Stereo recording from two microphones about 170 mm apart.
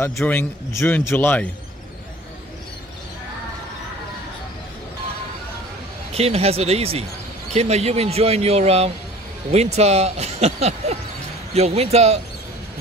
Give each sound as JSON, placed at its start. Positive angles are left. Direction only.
{"t": 0.0, "sound": "a man's voice", "side_deg": 15}
{"t": 6.1, "sound": "speech", "side_deg": -35}